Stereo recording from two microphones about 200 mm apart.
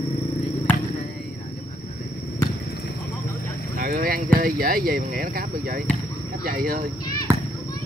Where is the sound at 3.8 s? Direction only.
45° right (ahead or behind).